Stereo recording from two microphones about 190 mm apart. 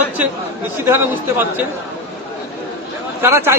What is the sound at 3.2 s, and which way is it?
Speech, 15° right (ahead or behind).